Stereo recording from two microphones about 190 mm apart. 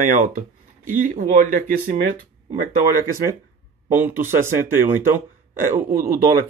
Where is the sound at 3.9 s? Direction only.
10° right (ahead or behind).